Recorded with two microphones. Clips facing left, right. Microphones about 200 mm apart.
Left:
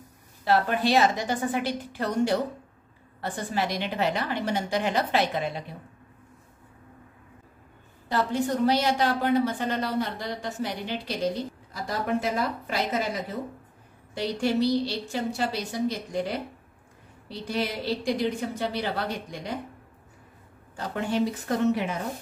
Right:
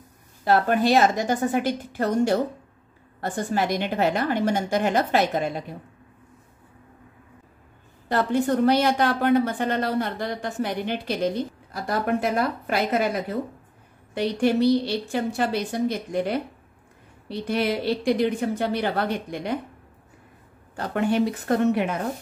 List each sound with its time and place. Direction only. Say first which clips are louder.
0.5 s a woman's voice: right 4 dB; 45° right (ahead or behind)
8.1 s a woman's voice: right 4 dB; 55° right (ahead or behind)
20.7 s a woman's voice: right 5 dB; 60° right (ahead or behind)